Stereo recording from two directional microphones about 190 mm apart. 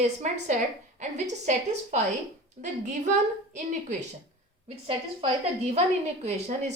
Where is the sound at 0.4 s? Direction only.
40° right (ahead or behind).